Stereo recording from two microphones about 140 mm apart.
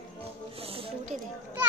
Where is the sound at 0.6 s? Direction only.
40° right (ahead or behind).